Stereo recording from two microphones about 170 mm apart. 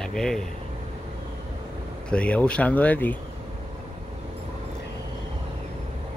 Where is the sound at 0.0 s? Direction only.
5° left (ahead or behind).